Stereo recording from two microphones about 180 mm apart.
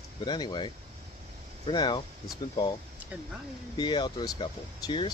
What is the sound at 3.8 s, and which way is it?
Speech, 25° left (ahead or behind).